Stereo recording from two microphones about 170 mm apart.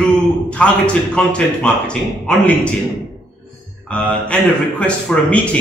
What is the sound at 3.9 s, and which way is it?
A man's voice, 5° left (ahead or behind).